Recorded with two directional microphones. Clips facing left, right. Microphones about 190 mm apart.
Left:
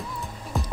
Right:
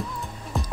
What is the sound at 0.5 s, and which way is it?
Music, centre (ahead or behind).